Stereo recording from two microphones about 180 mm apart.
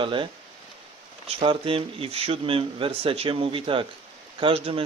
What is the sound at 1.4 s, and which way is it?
A man's voice, 30° right (ahead or behind).